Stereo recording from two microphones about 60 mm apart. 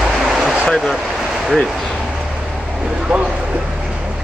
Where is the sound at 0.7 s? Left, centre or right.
Centre.